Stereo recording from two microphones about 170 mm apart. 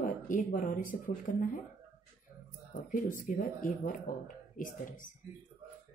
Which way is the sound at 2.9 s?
50° left (ahead or behind).